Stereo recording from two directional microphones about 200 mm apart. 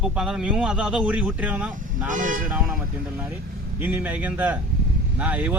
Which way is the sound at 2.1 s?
40° right (ahead or behind).